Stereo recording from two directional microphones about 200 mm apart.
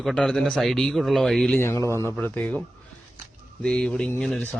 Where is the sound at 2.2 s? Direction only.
10° left (ahead or behind).